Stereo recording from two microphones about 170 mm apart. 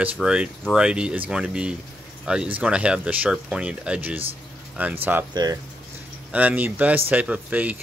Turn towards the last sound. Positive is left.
turn(degrees=-10)  # may be behind; listen again after turning